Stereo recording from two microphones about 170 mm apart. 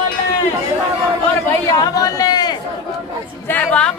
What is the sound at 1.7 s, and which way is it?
Speech, 20° left (ahead or behind).